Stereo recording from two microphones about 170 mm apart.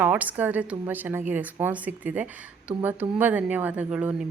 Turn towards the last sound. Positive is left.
turn(degrees=-5)  # may be behind; listen again after turning